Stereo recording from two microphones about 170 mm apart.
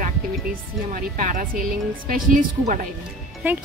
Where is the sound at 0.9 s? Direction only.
55° right (ahead or behind).